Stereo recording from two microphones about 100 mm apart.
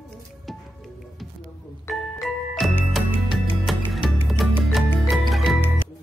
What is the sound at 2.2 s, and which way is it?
Music, centre (ahead or behind).